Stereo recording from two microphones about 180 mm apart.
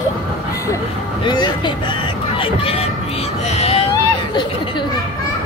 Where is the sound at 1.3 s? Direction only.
25° left (ahead or behind).